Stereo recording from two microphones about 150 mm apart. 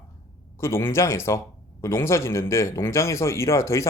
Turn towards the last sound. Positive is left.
turn(degrees=20)  # may be behind; listen again after turning